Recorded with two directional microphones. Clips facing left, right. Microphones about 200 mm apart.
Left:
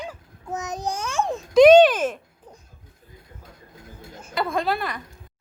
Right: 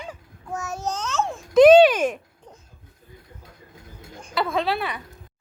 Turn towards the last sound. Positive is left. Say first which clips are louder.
# right 1 dB
turn(degrees=-5)  # may be behind; listen again after turning